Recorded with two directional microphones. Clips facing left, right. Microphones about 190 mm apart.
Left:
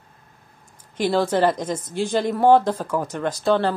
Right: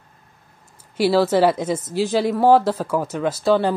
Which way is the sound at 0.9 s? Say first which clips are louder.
Right 4 dB; 5° right (ahead or behind).